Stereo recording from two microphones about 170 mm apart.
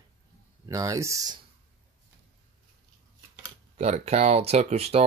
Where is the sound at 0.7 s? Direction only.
20° right (ahead or behind).